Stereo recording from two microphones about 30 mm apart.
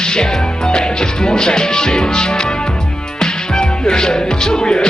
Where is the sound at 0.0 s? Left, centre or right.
Left.